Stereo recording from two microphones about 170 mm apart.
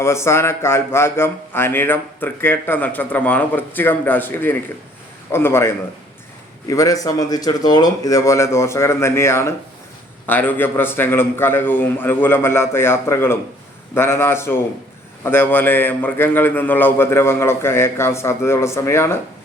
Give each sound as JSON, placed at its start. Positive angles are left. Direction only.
{"t": 0.0, "sound": "speech", "side_deg": 15}